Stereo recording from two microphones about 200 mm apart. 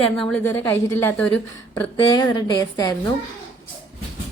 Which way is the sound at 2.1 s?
20° left (ahead or behind).